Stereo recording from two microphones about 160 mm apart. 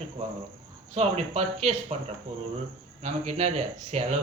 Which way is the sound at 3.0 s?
45° right (ahead or behind).